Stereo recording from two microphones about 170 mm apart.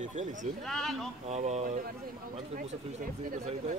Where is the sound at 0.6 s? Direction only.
Centre (ahead or behind).